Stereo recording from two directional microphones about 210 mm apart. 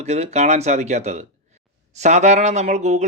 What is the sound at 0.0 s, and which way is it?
Speech, 30° right (ahead or behind).